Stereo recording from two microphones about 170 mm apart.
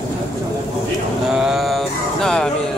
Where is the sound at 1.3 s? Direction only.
Centre (ahead or behind).